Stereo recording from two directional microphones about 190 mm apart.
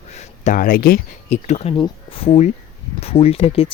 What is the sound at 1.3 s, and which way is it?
Speech, 35° left (ahead or behind).